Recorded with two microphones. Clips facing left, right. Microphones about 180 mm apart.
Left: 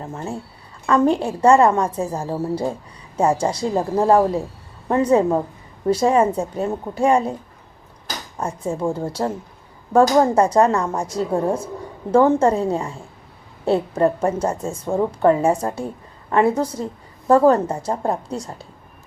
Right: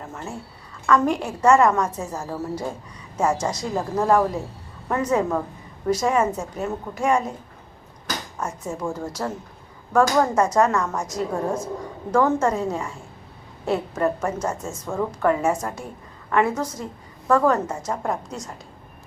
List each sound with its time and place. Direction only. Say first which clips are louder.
0.0 s a woman's voice: left 5 dB; 30° left (ahead or behind)
8.4 s a woman's voice: left 7 dB; 30° left (ahead or behind)